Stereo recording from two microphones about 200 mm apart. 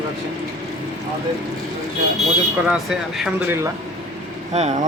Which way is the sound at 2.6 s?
5° right (ahead or behind).